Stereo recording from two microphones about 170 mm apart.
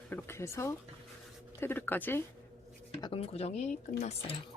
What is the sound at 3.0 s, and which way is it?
Speech, 35° left (ahead or behind).